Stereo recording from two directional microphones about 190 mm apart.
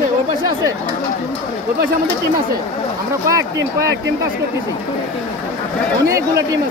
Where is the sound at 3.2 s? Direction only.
15° right (ahead or behind).